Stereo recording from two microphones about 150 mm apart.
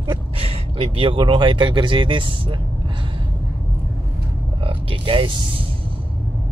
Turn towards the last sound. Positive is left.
turn(degrees=-35)  # may be behind; listen again after turning